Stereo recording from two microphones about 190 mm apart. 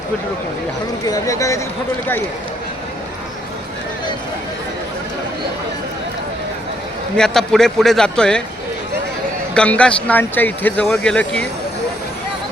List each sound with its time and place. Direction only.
1.0 s speech: 20° left (ahead or behind)
7.2 s a man's voice: 5° left (ahead or behind)
9.6 s speech: 5° left (ahead or behind)